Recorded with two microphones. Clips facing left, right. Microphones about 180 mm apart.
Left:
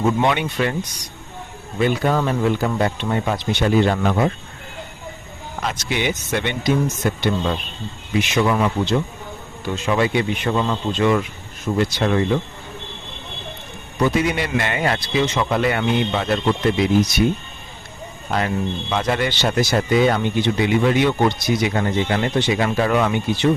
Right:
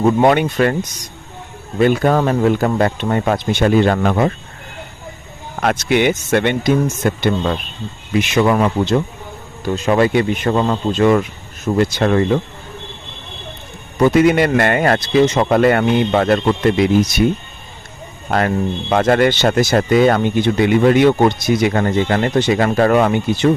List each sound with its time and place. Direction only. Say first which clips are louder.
0.0 s speech: right 6 dB; 45° right (ahead or behind)
1.8 s speech: right 5 dB; 50° right (ahead or behind)
5.6 s speech: right 8 dB; 55° right (ahead or behind)
14.0 s speech: right 8 dB; 55° right (ahead or behind)
18.3 s speech: right 5 dB; 55° right (ahead or behind)